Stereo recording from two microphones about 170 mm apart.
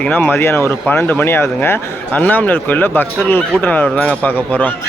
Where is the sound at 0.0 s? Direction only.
10° left (ahead or behind).